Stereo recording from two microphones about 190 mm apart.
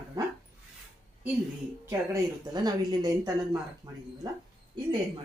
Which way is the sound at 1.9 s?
20° right (ahead or behind).